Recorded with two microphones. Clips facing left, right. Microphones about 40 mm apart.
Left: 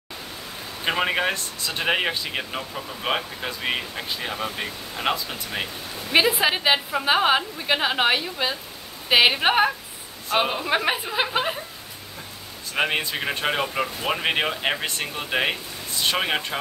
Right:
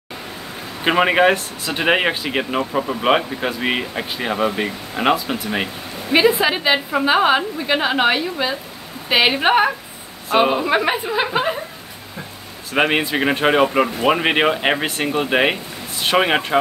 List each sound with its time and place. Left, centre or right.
0.8 s speech: right
6.4 s a woman's voice: centre
12.7 s speech: right